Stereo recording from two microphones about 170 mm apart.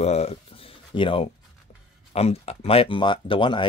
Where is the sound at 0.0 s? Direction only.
40° left (ahead or behind).